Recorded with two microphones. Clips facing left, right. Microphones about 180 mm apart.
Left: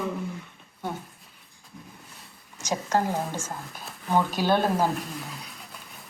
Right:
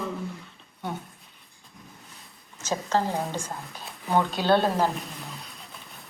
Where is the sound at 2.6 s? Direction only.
15° left (ahead or behind).